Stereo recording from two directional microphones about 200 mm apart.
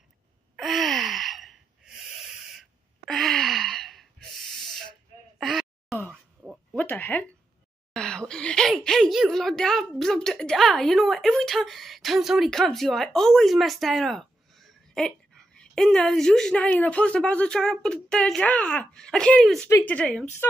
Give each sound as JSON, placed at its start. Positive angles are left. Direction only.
{"t": 0.6, "sound": "gasp", "side_deg": 0}
{"t": 5.4, "sound": "a sound", "side_deg": 0}
{"t": 6.8, "sound": "speech", "side_deg": 10}